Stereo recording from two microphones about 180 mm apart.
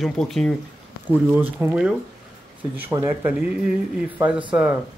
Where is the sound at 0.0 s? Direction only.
Centre (ahead or behind).